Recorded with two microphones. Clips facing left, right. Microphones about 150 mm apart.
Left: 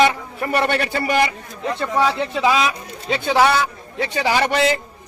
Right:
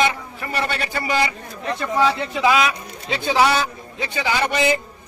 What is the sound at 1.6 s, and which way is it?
Speech, centre (ahead or behind).